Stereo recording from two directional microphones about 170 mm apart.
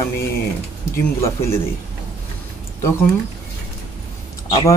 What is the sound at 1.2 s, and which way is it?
Speech, 15° left (ahead or behind).